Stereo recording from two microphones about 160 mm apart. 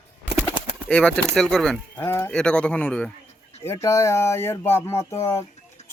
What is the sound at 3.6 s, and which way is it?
Speech, 20° left (ahead or behind).